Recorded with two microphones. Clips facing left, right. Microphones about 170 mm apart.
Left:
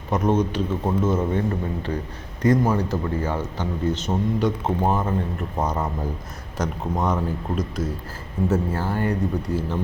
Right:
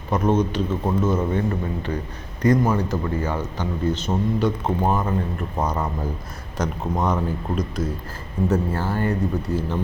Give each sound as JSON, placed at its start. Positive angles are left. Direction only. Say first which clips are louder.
{"t": 0.1, "sound": "speech", "louder": "right 1 dB", "side_deg": 15}
{"t": 0.9, "sound": "a man's voice", "louder": "even", "side_deg": 25}
{"t": 4.8, "sound": "a man's voice", "louder": "even", "side_deg": 30}
{"t": 6.6, "sound": "speech", "louder": "right 1 dB", "side_deg": 0}